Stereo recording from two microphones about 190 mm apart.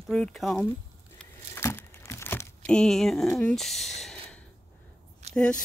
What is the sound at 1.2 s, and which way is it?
Crumpling, 10° left (ahead or behind).